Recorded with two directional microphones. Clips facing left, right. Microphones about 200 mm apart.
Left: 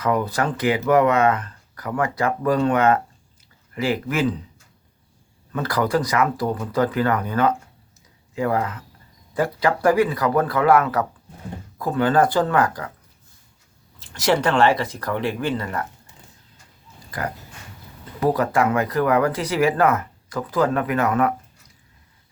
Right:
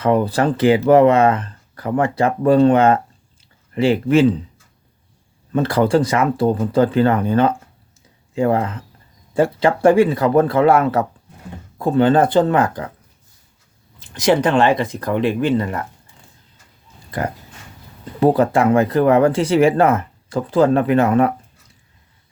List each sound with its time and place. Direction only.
0.0 s speech: 30° right (ahead or behind)
5.5 s speech: 30° right (ahead or behind)
14.1 s speech: 20° right (ahead or behind)
17.1 s speech: 25° right (ahead or behind)